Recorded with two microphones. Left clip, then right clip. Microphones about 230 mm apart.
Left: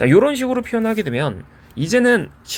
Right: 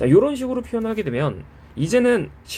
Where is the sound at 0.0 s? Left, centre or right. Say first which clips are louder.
Left 3 dB; left.